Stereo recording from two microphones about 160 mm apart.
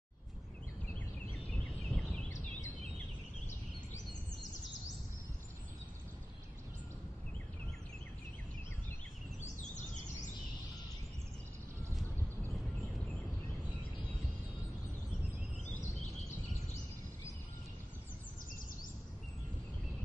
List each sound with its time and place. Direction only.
1.5 s turkey: 5° left (ahead or behind)
9.4 s bird: 50° left (ahead or behind)